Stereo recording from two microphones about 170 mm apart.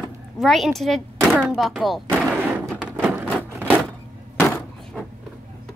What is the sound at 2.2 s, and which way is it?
Slam, 10° right (ahead or behind).